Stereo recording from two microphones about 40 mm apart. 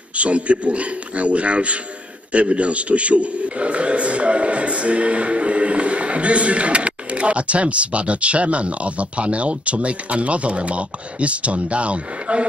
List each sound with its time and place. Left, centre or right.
0.2 s a man's voice: right